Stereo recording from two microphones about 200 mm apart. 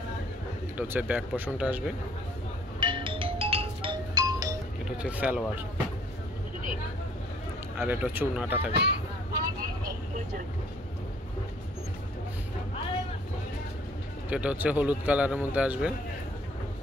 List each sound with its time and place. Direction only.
0.7 s speech: 10° right (ahead or behind)
2.8 s music: 25° right (ahead or behind)
4.9 s speech: 5° right (ahead or behind)
7.8 s speech: 10° right (ahead or behind)
8.7 s speech: 55° right (ahead or behind)
14.3 s speech: 5° right (ahead or behind)